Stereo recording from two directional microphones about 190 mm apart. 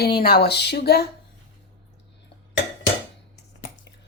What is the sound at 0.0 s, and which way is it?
Speech, 55° left (ahead or behind).